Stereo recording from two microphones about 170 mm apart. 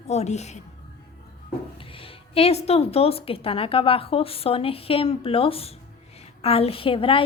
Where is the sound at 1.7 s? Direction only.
30° left (ahead or behind).